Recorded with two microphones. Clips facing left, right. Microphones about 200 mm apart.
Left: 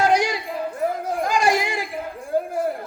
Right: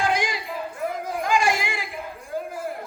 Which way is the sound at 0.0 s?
40° left (ahead or behind).